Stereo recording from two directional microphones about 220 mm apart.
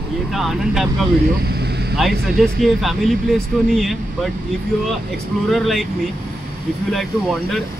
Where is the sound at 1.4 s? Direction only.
45° right (ahead or behind).